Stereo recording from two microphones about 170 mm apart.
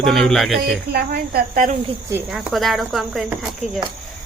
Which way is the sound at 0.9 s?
65° right (ahead or behind).